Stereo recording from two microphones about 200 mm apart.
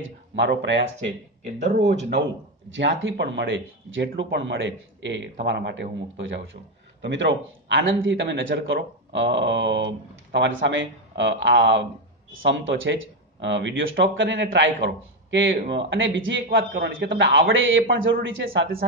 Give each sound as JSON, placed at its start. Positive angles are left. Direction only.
{"t": 0.0, "sound": "speech", "side_deg": -65}
{"t": 2.0, "sound": "speech", "side_deg": -55}
{"t": 2.7, "sound": "a man's voice", "side_deg": -70}
{"t": 12.3, "sound": "a man's voice", "side_deg": -75}